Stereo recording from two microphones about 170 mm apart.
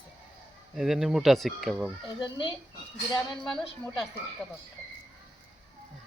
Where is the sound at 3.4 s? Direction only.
5° left (ahead or behind).